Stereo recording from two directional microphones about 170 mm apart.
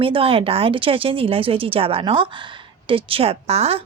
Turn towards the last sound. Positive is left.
turn(degrees=-35)  # may be behind; listen again after turning